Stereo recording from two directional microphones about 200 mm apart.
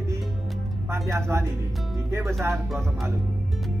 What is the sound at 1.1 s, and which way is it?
Speech, 15° right (ahead or behind).